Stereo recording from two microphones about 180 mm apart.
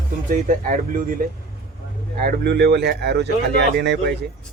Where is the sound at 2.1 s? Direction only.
60° right (ahead or behind).